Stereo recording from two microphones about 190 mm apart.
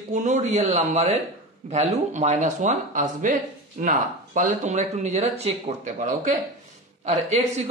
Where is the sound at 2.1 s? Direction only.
40° right (ahead or behind).